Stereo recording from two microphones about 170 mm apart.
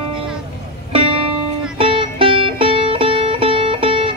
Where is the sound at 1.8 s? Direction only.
30° right (ahead or behind).